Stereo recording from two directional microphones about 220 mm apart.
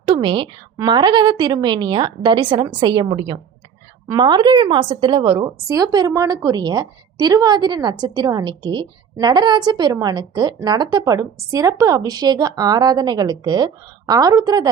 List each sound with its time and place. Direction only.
0.0 s a woman's voice: 20° right (ahead or behind)